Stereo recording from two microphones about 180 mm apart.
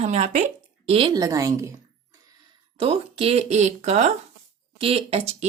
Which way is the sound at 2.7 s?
30° right (ahead or behind).